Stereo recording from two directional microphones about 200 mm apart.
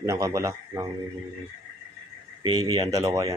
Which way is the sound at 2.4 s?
90° right.